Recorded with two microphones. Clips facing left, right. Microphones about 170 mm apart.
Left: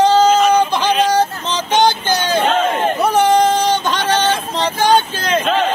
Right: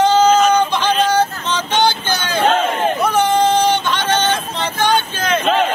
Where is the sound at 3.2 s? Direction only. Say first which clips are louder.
Left 2 dB; 40° left (ahead or behind).